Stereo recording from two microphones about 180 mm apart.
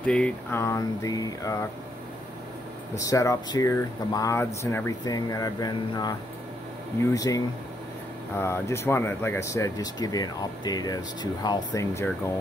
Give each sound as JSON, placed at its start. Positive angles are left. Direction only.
{"t": 0.0, "sound": "speech", "side_deg": 5}
{"t": 3.0, "sound": "speech", "side_deg": 20}